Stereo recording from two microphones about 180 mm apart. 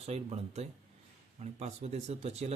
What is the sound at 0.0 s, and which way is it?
Speech, 35° right (ahead or behind).